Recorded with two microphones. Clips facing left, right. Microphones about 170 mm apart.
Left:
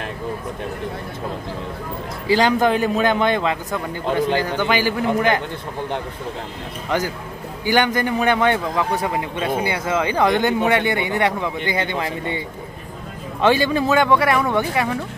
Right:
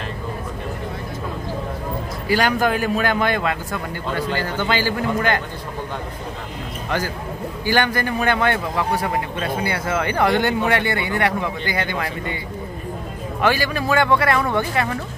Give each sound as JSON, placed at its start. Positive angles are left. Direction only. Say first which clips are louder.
{"t": 2.2, "sound": "speech", "louder": "left 3 dB", "side_deg": 20}
{"t": 7.6, "sound": "a man's voice", "louder": "left 2 dB", "side_deg": 15}
{"t": 13.4, "sound": "a man's voice", "louder": "left 4 dB", "side_deg": 25}